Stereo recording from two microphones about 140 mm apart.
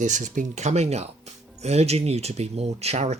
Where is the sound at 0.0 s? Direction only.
60° right (ahead or behind).